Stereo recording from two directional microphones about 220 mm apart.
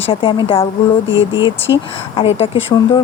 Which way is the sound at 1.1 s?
60° left (ahead or behind).